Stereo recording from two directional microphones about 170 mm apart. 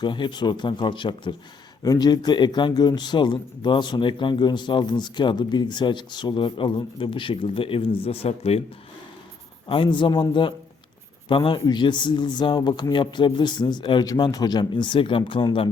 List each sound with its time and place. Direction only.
0.0 s speech: 25° left (ahead or behind)
9.6 s speech: 30° left (ahead or behind)